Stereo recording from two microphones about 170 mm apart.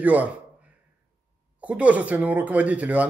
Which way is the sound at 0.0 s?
10° right (ahead or behind).